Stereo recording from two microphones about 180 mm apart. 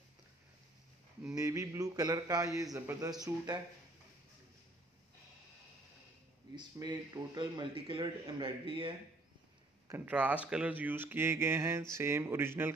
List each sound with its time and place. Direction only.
1.2 s a man's voice: 20° right (ahead or behind)
6.5 s a man's voice: 25° right (ahead or behind)
9.8 s speech: 10° right (ahead or behind)